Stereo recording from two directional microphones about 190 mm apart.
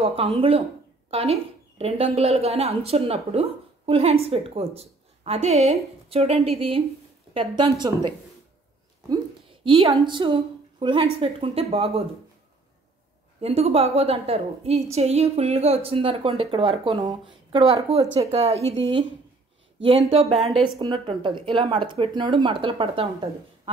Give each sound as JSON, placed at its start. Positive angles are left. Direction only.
{"t": 0.0, "sound": "a woman's voice", "side_deg": -30}
{"t": 9.1, "sound": "a sound", "side_deg": -25}
{"t": 11.1, "sound": "a woman's voice", "side_deg": -30}
{"t": 13.4, "sound": "a woman's voice", "side_deg": -30}
{"t": 20.1, "sound": "speech", "side_deg": -30}